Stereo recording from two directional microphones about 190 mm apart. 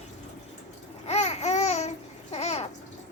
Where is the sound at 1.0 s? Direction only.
35° left (ahead or behind).